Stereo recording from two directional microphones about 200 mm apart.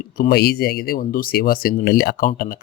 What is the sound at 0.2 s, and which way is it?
Speech, 50° left (ahead or behind).